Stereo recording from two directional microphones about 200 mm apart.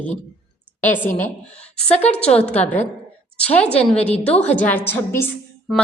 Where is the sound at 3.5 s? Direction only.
30° left (ahead or behind).